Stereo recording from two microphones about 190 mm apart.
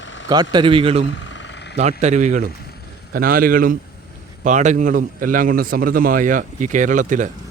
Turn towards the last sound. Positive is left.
turn(degrees=-40)  # may be behind; listen again after turning